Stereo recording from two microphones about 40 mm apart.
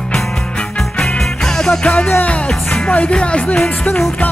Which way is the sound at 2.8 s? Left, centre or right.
Left.